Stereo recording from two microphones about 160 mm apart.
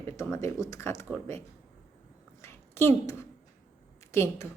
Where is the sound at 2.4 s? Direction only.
15° left (ahead or behind).